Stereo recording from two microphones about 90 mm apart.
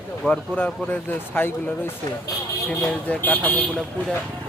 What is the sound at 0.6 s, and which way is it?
Speech, 20° left (ahead or behind).